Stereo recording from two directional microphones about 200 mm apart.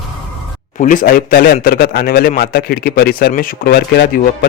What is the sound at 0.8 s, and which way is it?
A man's voice, 40° left (ahead or behind).